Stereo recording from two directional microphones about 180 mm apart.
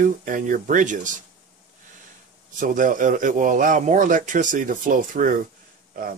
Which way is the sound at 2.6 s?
45° right (ahead or behind).